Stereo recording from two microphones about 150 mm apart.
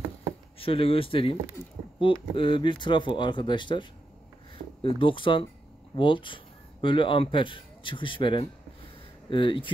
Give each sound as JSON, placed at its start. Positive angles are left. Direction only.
{"t": 0.6, "sound": "speech", "side_deg": 35}
{"t": 4.8, "sound": "speech", "side_deg": 35}